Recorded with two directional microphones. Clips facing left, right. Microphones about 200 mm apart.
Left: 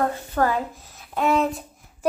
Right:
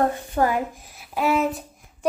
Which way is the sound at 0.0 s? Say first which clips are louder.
Right 1 dB; 15° right (ahead or behind).